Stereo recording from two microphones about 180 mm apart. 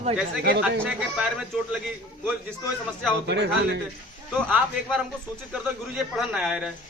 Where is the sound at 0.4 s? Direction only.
70° right (ahead or behind).